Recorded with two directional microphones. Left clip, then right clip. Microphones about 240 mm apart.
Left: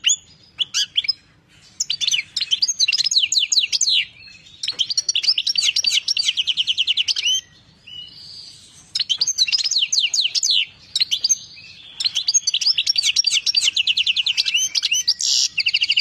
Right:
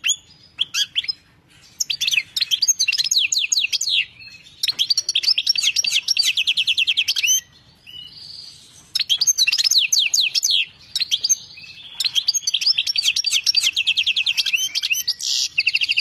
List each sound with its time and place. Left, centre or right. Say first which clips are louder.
0.6 s chirp: left 1 dB; centre
2.0 s bird: right 1 dB; centre
4.6 s chirp: right 2 dB; centre
6.2 s bird: right 1 dB; centre
8.9 s bird: right 2 dB; centre
12.0 s chirp: even; centre
14.1 s bird: even; centre